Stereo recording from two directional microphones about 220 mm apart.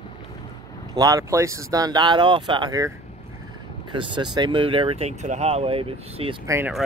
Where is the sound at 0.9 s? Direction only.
15° right (ahead or behind).